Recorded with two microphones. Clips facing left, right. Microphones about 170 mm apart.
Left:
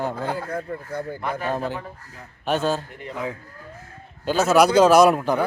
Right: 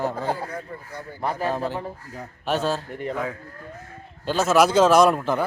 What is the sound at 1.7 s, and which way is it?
Speech, 35° right (ahead or behind).